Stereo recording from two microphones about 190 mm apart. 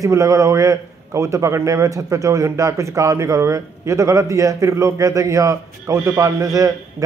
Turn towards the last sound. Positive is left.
turn(degrees=-15)  # may be behind; listen again after turning